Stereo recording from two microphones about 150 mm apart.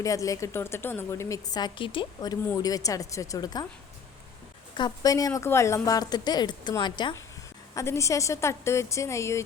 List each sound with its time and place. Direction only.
0.0 s a woman's voice: 20° left (ahead or behind)
4.7 s a woman's voice: 25° left (ahead or behind)